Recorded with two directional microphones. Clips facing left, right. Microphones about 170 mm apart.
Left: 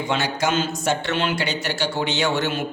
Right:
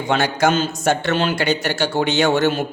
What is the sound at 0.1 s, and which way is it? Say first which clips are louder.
A man's voice: right 6 dB; 50° right (ahead or behind).